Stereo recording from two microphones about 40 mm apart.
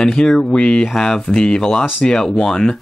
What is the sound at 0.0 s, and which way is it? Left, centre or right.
Speech, centre.